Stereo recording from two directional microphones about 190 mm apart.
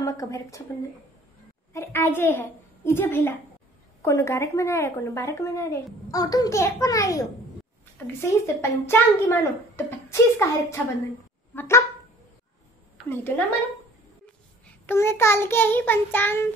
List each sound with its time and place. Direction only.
0.0 s a child's voice: 15° left (ahead or behind)
1.7 s a child's voice: 10° left (ahead or behind)
11.5 s dog: 15° left (ahead or behind)
13.1 s a child's voice: 10° left (ahead or behind)
14.9 s a child's voice: 15° left (ahead or behind)